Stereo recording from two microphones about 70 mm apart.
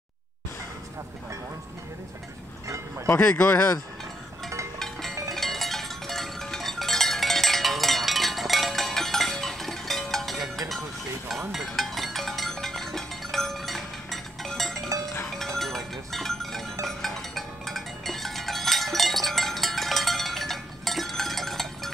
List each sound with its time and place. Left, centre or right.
3.3 s speech: centre
4.7 s music: centre